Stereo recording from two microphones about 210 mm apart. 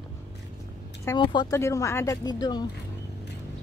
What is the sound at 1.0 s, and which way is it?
Speech, 20° left (ahead or behind).